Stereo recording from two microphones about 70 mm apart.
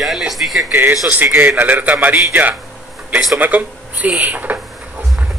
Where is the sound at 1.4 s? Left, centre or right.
Right.